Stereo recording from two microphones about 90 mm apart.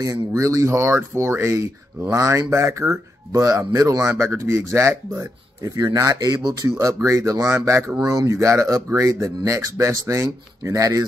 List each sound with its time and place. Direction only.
0.0 s speech: 40° right (ahead or behind)